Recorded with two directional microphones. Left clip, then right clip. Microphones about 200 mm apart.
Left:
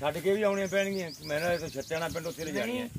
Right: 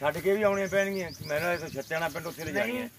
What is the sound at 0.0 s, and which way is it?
Speech, centre (ahead or behind).